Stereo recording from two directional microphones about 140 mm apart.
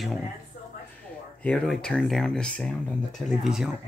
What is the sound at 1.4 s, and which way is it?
Speech, 5° left (ahead or behind).